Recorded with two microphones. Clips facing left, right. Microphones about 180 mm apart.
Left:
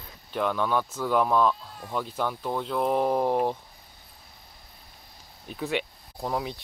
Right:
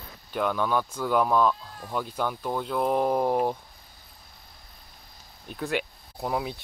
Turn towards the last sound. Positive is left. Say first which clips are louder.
# right 1 dB
turn(degrees=-5)  # may be behind; listen again after turning